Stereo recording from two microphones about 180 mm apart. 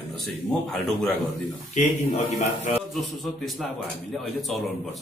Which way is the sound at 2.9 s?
Centre (ahead or behind).